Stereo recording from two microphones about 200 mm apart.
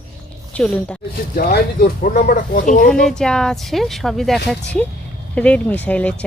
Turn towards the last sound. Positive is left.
turn(degrees=5)  # may be behind; listen again after turning